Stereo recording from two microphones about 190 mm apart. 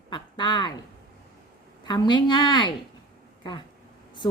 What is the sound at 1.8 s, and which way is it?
Speech, 25° left (ahead or behind).